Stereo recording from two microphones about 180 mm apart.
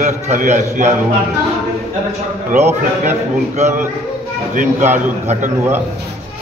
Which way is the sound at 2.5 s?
40° right (ahead or behind).